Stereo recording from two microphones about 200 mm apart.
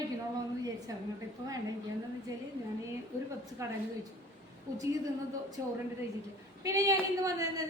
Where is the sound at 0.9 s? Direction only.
15° right (ahead or behind).